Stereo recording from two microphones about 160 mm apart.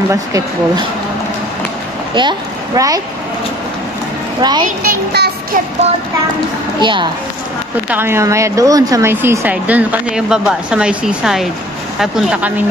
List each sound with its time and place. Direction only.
0.1 s speech: 20° right (ahead or behind)
2.1 s speech: 25° right (ahead or behind)
4.4 s speech: 25° right (ahead or behind)
4.8 s a child's voice: 90° right
6.8 s speech: 30° right (ahead or behind)
7.9 s speech: 15° right (ahead or behind)